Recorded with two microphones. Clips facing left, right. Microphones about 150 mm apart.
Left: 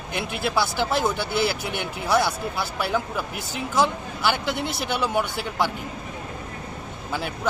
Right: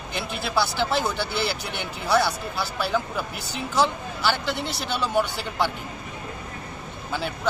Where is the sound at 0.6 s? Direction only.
10° left (ahead or behind).